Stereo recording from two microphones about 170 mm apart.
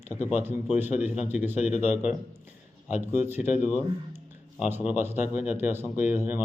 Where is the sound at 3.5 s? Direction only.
45° left (ahead or behind).